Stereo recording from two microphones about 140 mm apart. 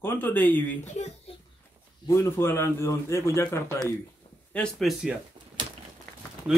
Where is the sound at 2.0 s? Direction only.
20° left (ahead or behind).